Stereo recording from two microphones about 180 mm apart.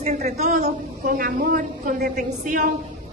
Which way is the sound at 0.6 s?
55° right (ahead or behind).